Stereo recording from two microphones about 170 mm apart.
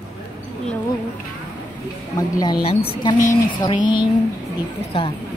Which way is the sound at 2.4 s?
25° left (ahead or behind).